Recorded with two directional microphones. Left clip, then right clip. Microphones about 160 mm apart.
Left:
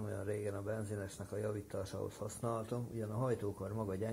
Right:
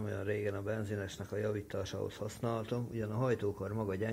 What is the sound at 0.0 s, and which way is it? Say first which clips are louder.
Speech: right 4 dB; 25° right (ahead or behind).